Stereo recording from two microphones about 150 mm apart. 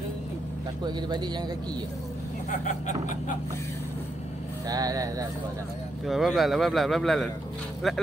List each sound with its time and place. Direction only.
0.8 s speech: 30° right (ahead or behind)
4.6 s speech: 25° right (ahead or behind)
6.0 s a man's voice: centre (ahead or behind)